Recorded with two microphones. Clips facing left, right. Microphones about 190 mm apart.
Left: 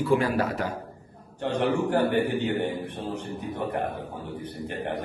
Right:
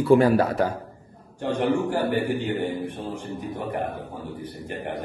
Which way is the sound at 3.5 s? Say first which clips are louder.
Left 1 dB; 65° left (ahead or behind).